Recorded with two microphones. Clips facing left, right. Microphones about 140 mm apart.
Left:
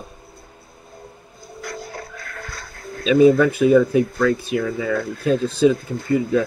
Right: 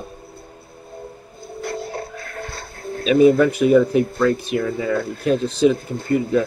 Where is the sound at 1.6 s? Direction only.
25° right (ahead or behind).